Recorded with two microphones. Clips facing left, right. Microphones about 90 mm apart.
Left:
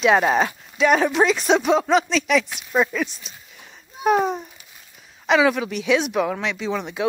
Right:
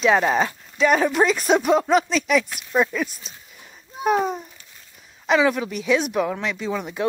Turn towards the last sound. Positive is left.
turn(degrees=0)  # may be behind; listen again after turning